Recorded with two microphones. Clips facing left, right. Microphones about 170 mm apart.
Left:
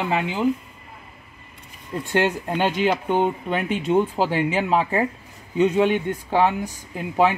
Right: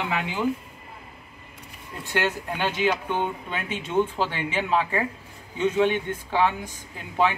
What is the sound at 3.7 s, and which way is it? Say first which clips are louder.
Speech: left 3 dB; 10° left (ahead or behind).